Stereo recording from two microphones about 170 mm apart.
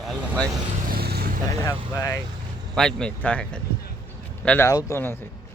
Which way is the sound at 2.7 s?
5° left (ahead or behind).